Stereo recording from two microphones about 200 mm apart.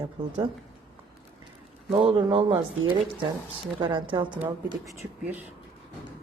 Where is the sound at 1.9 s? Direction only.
25° right (ahead or behind).